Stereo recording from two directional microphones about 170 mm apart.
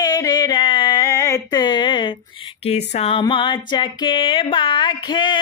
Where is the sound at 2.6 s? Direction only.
40° left (ahead or behind).